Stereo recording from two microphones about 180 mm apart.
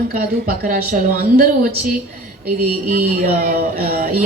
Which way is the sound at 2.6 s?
55° right (ahead or behind).